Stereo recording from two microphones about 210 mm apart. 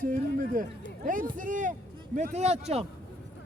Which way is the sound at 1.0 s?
40° right (ahead or behind).